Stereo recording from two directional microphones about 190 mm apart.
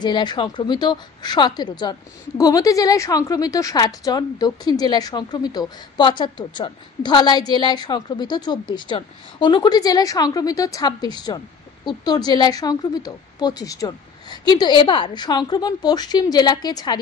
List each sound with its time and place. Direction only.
0.0 s a woman's voice: 25° left (ahead or behind)